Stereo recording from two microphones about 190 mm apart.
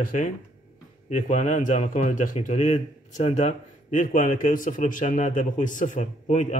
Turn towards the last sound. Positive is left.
turn(degrees=40)  # may be behind; listen again after turning